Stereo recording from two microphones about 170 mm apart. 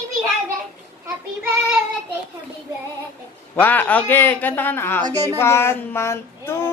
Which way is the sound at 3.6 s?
10° left (ahead or behind).